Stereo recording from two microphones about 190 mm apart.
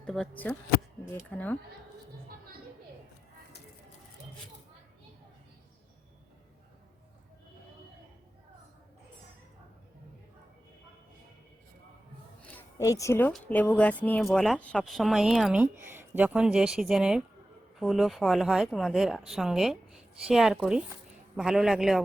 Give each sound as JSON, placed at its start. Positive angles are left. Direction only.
{"t": 0.0, "sound": "speech", "side_deg": 5}
{"t": 12.5, "sound": "a woman's voice", "side_deg": 15}